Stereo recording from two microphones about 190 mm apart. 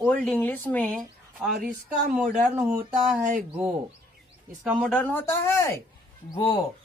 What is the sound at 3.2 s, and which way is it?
Speech, 45° right (ahead or behind).